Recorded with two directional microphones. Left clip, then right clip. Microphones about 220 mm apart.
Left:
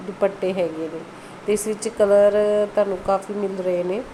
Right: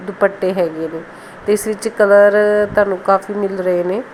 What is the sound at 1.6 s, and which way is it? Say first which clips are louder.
Speech: right 4 dB; 15° right (ahead or behind).